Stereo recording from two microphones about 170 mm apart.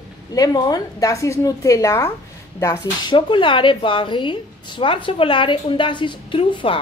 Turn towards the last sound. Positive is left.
turn(degrees=30)  # may be behind; listen again after turning